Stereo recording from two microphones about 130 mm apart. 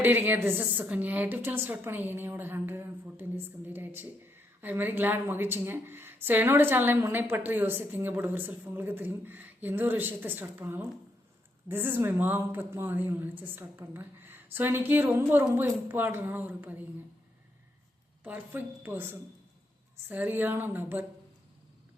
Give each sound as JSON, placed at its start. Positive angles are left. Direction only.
{"t": 0.0, "sound": "a woman's voice", "side_deg": -15}
{"t": 18.2, "sound": "a woman's voice", "side_deg": -15}